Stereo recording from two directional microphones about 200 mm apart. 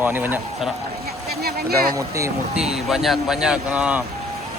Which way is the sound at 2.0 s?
15° right (ahead or behind).